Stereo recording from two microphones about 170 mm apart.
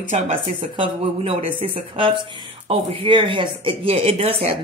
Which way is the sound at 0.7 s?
35° right (ahead or behind).